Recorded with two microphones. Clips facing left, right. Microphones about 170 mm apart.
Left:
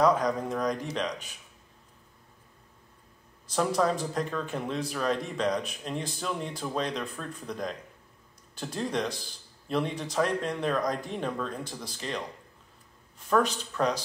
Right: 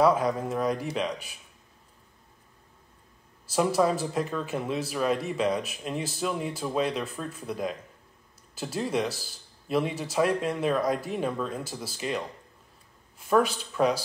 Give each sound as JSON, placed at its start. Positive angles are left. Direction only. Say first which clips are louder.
{"t": 0.0, "sound": "a man's voice", "louder": "right 1 dB", "side_deg": -5}
{"t": 3.4, "sound": "a man's voice", "louder": "right 2 dB", "side_deg": -5}
{"t": 13.3, "sound": "a man's voice", "louder": "right 2 dB", "side_deg": -10}